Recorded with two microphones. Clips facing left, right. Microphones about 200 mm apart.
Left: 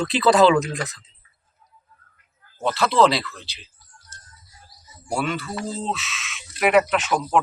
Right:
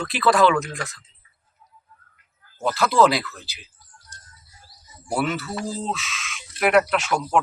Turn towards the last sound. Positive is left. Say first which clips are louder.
# left 1 dB
turn(degrees=0)  # may be behind; listen again after turning